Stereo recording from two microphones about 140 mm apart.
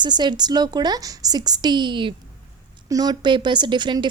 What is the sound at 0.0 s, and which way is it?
A woman's voice, 30° right (ahead or behind).